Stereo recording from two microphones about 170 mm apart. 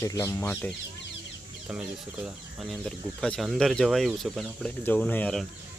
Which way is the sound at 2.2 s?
Centre (ahead or behind).